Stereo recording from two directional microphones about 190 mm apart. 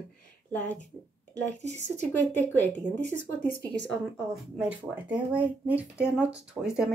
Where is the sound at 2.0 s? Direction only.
10° left (ahead or behind).